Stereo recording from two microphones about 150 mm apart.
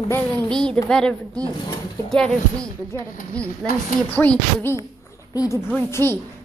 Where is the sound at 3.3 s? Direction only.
10° left (ahead or behind).